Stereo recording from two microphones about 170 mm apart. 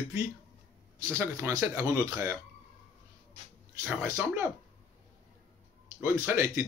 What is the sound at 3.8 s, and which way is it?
Speech, 15° right (ahead or behind).